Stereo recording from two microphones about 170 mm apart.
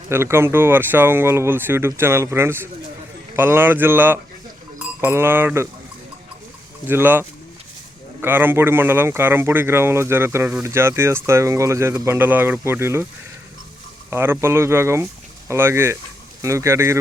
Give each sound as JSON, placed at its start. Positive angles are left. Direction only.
{"t": 0.1, "sound": "speech", "side_deg": -15}
{"t": 6.8, "sound": "speech", "side_deg": -10}
{"t": 14.1, "sound": "speech", "side_deg": -15}